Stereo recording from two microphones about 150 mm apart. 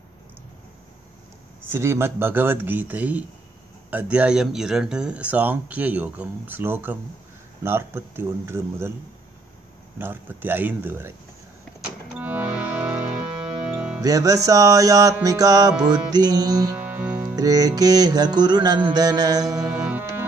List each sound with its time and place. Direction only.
1.6 s speech: 15° right (ahead or behind)
9.9 s speech: 15° right (ahead or behind)
12.2 s music: 10° right (ahead or behind)
14.0 s music: 25° right (ahead or behind)
16.7 s music: 10° right (ahead or behind)
17.4 s music: 25° right (ahead or behind)
19.7 s music: 5° right (ahead or behind)